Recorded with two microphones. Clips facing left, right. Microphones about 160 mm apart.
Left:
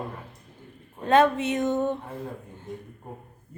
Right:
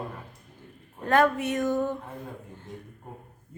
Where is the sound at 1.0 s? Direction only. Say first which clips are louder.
Left 2 dB; 20° left (ahead or behind).